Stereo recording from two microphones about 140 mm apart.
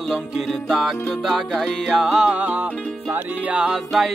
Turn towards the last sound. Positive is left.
turn(degrees=-5)  # may be behind; listen again after turning